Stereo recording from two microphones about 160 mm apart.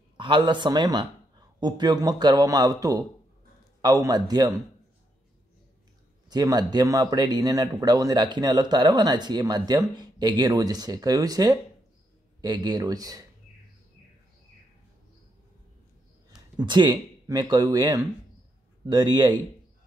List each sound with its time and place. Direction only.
0.2 s speech: 30° right (ahead or behind)
6.2 s speech: 25° right (ahead or behind)
16.5 s speech: 30° right (ahead or behind)